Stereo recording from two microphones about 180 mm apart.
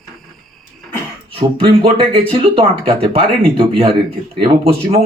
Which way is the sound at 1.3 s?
30° right (ahead or behind).